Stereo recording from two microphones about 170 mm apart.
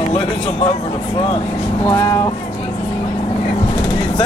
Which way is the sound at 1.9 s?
15° left (ahead or behind).